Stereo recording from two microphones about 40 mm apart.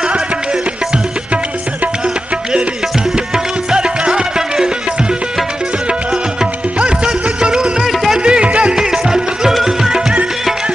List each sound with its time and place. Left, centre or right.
3.7 s music: right
7.8 s music: centre
8.2 s music: right
8.7 s music: centre